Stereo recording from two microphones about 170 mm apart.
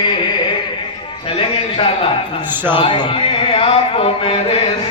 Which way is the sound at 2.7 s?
30° left (ahead or behind).